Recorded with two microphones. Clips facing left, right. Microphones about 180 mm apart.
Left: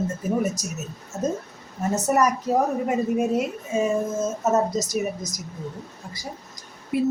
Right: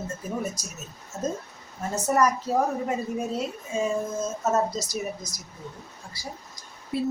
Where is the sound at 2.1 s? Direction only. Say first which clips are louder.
Left 1 dB; 15° left (ahead or behind).